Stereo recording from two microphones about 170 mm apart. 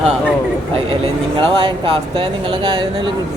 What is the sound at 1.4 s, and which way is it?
Speech, 30° right (ahead or behind).